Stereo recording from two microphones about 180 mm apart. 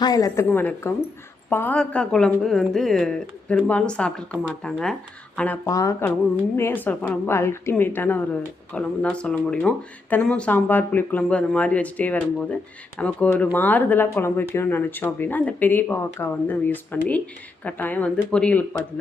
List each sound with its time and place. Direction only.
0.0 s a woman's voice: 20° left (ahead or behind)
5.6 s a woman's voice: 20° left (ahead or behind)